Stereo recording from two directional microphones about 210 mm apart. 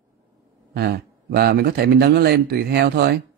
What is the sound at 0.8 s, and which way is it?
Speech, 50° right (ahead or behind).